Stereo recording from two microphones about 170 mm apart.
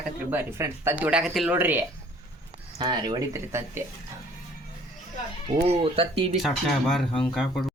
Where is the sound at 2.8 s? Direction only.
25° right (ahead or behind).